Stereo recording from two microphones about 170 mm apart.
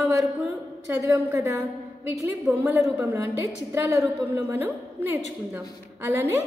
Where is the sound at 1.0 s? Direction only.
15° right (ahead or behind).